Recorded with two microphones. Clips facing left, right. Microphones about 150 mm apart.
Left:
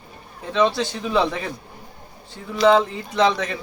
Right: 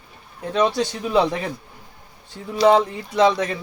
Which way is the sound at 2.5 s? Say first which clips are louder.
Right 1 dB; 40° right (ahead or behind).